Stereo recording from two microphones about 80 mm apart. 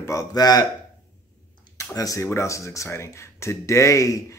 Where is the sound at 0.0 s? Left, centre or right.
Left.